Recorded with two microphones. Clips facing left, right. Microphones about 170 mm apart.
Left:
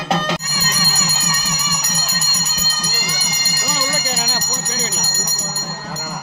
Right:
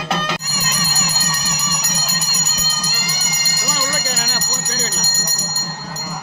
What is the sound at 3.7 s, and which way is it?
Bell, 20° left (ahead or behind).